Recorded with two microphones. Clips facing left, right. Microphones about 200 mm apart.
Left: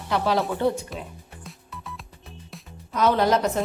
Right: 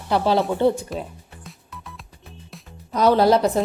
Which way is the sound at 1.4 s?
Centre (ahead or behind).